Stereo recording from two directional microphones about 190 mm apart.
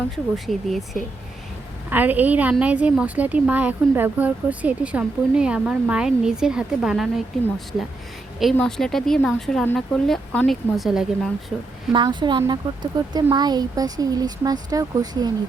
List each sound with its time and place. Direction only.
0.3 s a woman's voice: centre (ahead or behind)
11.9 s speech: 25° right (ahead or behind)